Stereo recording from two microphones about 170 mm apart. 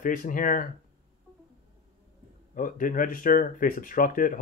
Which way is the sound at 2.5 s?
55° left (ahead or behind).